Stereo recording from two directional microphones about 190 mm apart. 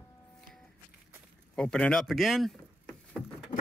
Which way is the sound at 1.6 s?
5° left (ahead or behind).